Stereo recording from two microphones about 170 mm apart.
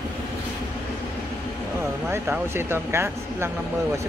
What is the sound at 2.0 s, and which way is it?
Speech, 10° right (ahead or behind).